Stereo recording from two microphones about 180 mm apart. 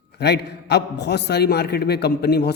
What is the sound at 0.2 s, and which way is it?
A man's voice, 70° left (ahead or behind).